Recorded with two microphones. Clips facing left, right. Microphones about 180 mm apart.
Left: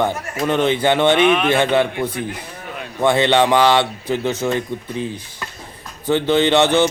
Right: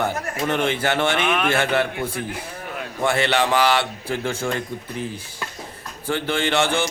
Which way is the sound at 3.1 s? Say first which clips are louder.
Left 5 dB; 20° left (ahead or behind).